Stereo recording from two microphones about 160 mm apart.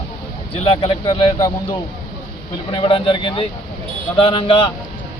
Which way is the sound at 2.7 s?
30° left (ahead or behind).